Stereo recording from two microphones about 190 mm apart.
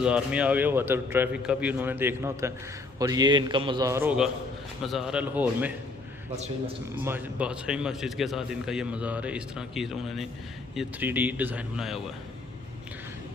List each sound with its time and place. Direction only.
0.0 s a man's voice: 5° right (ahead or behind)
6.9 s a man's voice: 10° right (ahead or behind)